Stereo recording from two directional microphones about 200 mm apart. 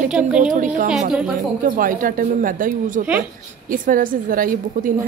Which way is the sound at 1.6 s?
45° right (ahead or behind).